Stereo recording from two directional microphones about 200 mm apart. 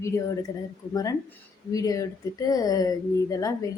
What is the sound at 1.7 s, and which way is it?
A woman's voice, 15° left (ahead or behind).